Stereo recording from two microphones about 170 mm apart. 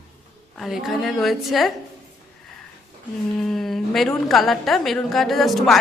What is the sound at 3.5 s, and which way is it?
A woman's voice, centre (ahead or behind).